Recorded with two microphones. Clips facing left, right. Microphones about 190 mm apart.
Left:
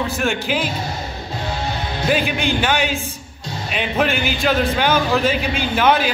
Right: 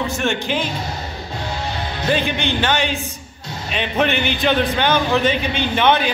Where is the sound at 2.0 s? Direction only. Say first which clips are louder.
Left 1 dB; 5° left (ahead or behind).